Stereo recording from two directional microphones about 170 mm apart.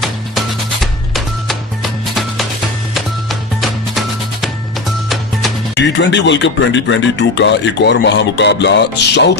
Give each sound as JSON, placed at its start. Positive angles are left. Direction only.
{"t": 1.1, "sound": "music", "side_deg": 0}
{"t": 5.8, "sound": "speech", "side_deg": 90}